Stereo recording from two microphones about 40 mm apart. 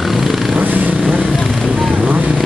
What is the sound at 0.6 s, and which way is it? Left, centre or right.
Vehicle, right.